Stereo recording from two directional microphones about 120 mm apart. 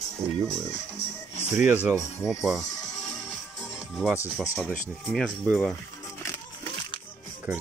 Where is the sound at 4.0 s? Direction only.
Centre (ahead or behind).